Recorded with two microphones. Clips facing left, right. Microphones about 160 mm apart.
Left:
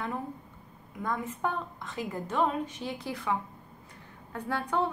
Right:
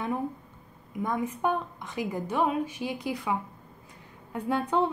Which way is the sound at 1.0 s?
15° right (ahead or behind).